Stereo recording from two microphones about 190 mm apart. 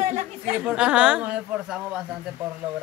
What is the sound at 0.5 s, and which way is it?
A man's voice, 5° right (ahead or behind).